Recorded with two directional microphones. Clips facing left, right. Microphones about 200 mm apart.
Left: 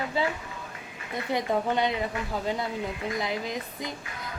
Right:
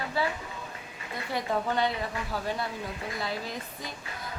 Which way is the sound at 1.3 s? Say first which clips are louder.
Left 2 dB; 20° left (ahead or behind).